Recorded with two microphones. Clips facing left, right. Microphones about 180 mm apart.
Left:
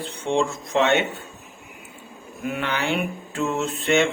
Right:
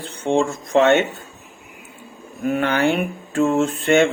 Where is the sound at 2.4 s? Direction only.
45° right (ahead or behind).